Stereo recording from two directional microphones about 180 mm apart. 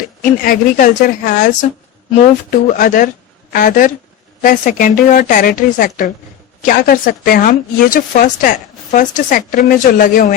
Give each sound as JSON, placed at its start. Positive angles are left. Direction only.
{"t": 0.2, "sound": "speech", "side_deg": 50}
{"t": 2.7, "sound": "speech", "side_deg": 50}